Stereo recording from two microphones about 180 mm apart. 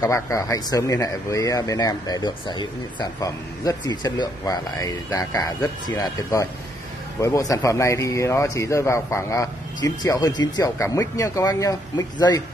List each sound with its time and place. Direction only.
0.0 s a man's voice: 15° left (ahead or behind)